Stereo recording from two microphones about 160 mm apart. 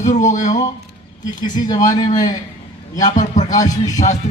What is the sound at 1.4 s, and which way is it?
Speech, 25° left (ahead or behind).